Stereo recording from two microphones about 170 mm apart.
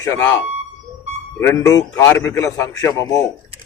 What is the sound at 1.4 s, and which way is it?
A man's voice, 15° left (ahead or behind).